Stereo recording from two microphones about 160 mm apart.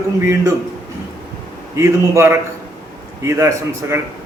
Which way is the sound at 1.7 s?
15° right (ahead or behind).